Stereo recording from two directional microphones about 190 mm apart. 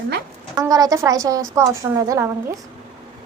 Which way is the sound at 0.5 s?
20° right (ahead or behind).